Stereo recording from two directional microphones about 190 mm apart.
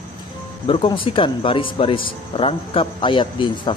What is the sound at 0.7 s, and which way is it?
Speech, 30° left (ahead or behind).